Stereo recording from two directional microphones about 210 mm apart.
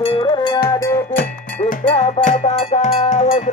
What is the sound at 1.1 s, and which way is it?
Music, 40° left (ahead or behind).